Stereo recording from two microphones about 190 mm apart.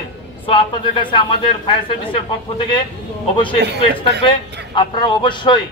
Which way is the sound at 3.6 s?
60° right (ahead or behind).